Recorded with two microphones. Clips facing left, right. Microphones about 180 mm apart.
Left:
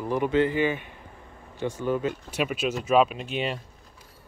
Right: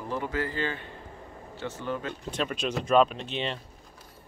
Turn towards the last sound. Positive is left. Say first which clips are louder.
# left 3 dB
turn(degrees=10)  # may be behind; listen again after turning